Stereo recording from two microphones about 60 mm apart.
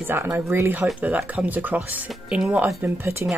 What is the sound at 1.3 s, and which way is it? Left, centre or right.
Speech, right.